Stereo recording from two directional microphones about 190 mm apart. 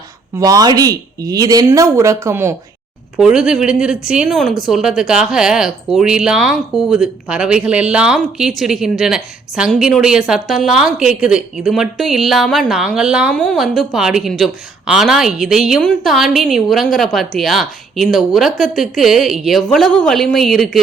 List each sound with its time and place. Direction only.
0.3 s speech: 20° right (ahead or behind); by 20.8 s centre (ahead or behind)